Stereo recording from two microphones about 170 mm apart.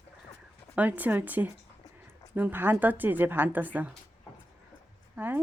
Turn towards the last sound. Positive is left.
turn(degrees=-10)  # may be behind; listen again after turning